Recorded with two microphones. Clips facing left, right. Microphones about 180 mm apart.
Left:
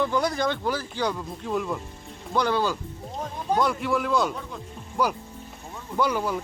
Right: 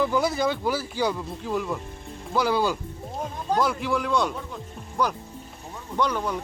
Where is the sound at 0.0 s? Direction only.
5° right (ahead or behind).